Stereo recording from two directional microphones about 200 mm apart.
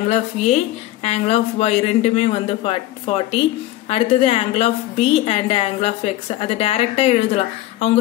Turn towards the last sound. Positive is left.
turn(degrees=30)  # may be behind; listen again after turning